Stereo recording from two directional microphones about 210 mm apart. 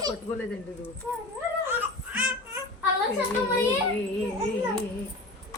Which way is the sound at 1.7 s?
10° right (ahead or behind).